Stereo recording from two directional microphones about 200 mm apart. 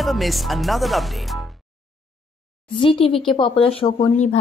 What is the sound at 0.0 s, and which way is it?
Speech, centre (ahead or behind).